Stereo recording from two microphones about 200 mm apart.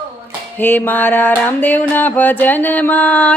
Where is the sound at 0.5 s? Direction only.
10° left (ahead or behind).